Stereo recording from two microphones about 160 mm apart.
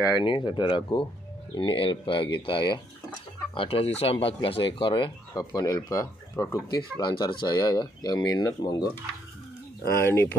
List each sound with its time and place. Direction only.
0.0 s speech: 30° left (ahead or behind); by 10.3 s 15° left (ahead or behind)